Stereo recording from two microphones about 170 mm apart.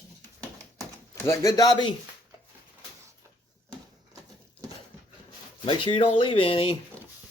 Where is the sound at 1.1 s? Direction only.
20° left (ahead or behind).